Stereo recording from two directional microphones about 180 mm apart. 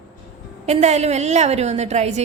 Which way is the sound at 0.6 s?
40° right (ahead or behind).